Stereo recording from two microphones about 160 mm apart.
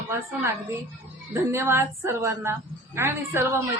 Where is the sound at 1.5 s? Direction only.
15° right (ahead or behind).